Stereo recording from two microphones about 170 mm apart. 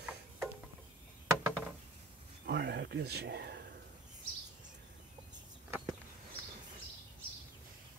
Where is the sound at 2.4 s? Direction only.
80° right.